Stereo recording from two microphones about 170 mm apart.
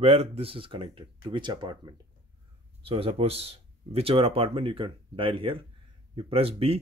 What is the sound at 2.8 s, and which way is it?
Speech, 35° right (ahead or behind).